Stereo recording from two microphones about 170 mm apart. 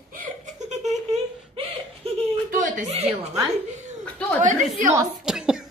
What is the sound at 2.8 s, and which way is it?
Speech, 35° right (ahead or behind).